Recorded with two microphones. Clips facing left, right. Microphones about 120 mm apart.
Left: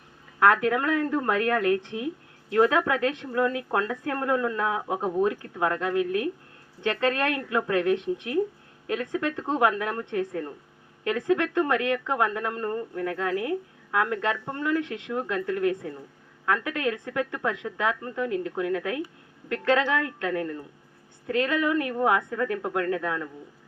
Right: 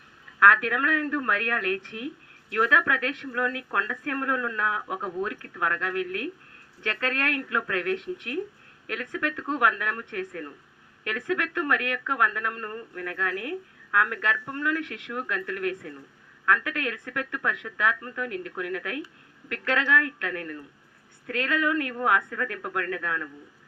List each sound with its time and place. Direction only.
0.3 s speech: 25° left (ahead or behind)